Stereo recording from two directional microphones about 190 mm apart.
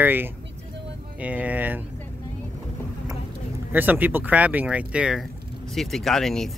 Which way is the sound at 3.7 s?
10° right (ahead or behind).